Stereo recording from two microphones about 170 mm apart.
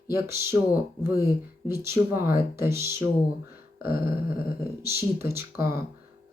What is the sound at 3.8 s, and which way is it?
Dog, 60° left (ahead or behind).